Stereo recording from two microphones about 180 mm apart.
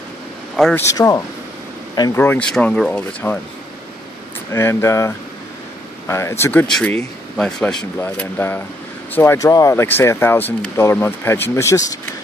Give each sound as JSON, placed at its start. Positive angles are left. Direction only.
{"t": 0.6, "sound": "speech", "side_deg": 5}
{"t": 0.8, "sound": "speech", "side_deg": 20}
{"t": 4.5, "sound": "speech", "side_deg": 15}